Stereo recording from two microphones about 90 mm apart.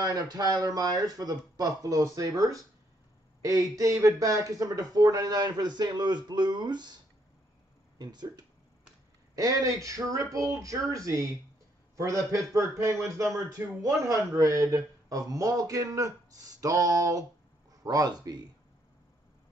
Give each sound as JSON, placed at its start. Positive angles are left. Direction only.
{"t": 0.0, "sound": "a man's voice", "side_deg": -45}
{"t": 8.0, "sound": "speech", "side_deg": -55}
{"t": 9.3, "sound": "a man's voice", "side_deg": -40}